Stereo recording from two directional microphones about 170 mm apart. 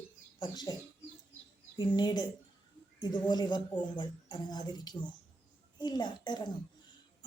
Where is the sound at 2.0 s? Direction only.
25° left (ahead or behind).